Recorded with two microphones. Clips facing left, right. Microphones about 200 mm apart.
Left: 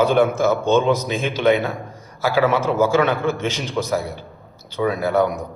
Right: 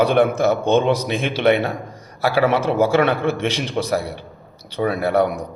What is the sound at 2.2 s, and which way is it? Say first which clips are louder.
A man's voice: right 1 dB; 60° right (ahead or behind).